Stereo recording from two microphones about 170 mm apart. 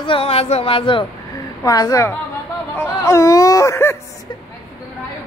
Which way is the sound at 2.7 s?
15° left (ahead or behind).